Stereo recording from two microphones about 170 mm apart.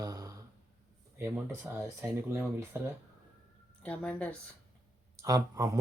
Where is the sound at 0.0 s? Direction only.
20° right (ahead or behind).